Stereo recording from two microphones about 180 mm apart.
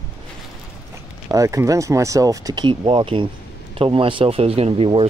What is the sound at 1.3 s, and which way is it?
Speech, 15° right (ahead or behind).